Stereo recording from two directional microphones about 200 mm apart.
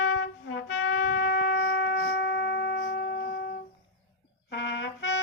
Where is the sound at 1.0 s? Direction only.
50° left (ahead or behind).